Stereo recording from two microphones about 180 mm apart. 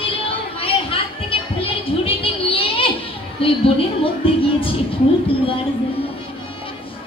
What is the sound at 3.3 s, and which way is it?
Music, 30° left (ahead or behind).